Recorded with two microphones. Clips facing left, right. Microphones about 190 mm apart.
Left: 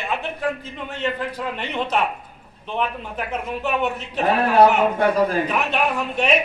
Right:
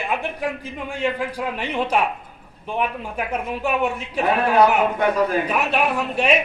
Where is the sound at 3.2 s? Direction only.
10° right (ahead or behind).